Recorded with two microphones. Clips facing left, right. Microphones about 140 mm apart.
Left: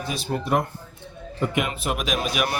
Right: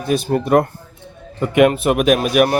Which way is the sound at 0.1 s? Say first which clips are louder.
Right 10 dB; 55° right (ahead or behind).